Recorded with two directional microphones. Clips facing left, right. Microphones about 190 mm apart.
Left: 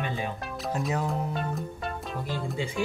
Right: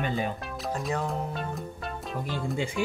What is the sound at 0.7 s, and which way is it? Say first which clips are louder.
Speech: left 1 dB; 5° left (ahead or behind).